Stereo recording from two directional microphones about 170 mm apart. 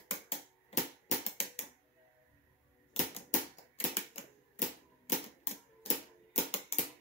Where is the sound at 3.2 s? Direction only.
35° left (ahead or behind).